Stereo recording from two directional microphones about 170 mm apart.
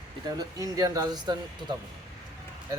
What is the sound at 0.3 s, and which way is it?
Speech, 20° right (ahead or behind).